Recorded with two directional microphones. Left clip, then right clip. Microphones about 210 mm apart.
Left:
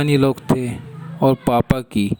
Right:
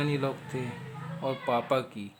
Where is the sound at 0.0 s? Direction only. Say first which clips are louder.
Left 13 dB; 45° left (ahead or behind).